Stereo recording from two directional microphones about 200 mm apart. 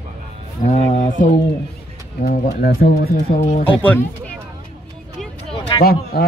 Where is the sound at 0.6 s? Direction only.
40° left (ahead or behind).